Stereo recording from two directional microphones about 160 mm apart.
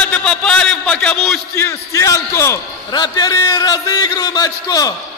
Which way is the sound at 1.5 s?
20° left (ahead or behind).